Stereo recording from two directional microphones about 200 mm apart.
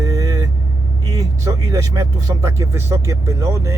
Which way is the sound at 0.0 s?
15° right (ahead or behind).